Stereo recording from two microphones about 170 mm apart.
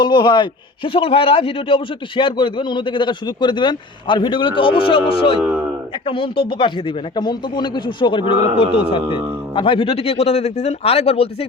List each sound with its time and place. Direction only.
0.0 s a man's voice: 25° left (ahead or behind)